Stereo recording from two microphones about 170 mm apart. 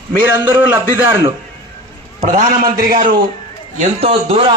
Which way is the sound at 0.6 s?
10° right (ahead or behind).